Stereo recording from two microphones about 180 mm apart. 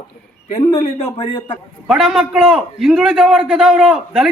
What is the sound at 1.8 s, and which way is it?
A man's voice, centre (ahead or behind).